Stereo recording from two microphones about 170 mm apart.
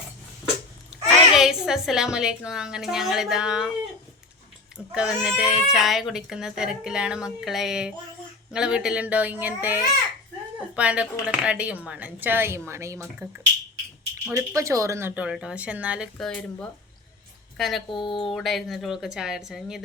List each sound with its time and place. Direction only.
0.9 s a woman's voice: centre (ahead or behind)
4.9 s speech: 5° right (ahead or behind)
16.1 s speech: 5° left (ahead or behind)
17.8 s speech: 30° left (ahead or behind)
18.3 s speech: centre (ahead or behind)